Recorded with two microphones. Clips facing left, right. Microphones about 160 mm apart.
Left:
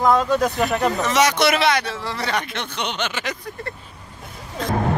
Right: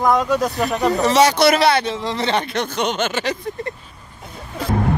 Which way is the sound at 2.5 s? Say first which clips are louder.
Right 6 dB; 45° right (ahead or behind).